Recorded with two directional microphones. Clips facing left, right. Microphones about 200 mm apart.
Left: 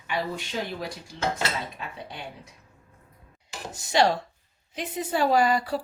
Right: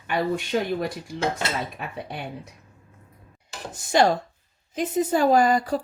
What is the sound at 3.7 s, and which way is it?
Speech, 50° right (ahead or behind).